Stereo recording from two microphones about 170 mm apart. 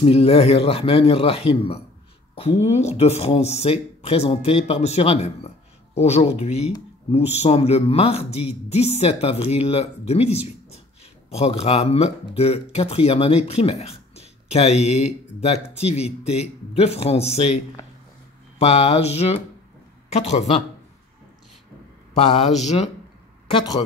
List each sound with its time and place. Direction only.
0.0 s speech: 35° left (ahead or behind)
18.6 s speech: 40° left (ahead or behind)
22.6 s speech: 40° left (ahead or behind)
23.5 s speech: 25° left (ahead or behind)